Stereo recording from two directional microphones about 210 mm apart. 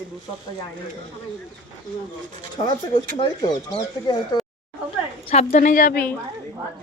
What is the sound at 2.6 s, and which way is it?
Speech, 20° left (ahead or behind).